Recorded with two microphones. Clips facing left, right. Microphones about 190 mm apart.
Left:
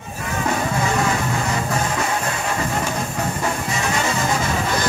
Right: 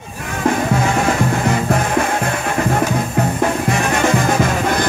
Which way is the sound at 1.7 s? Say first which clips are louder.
Right 5 dB; 55° right (ahead or behind).